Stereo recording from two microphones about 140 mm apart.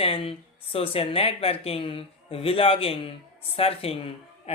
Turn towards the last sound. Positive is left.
turn(degrees=45)  # may be behind; listen again after turning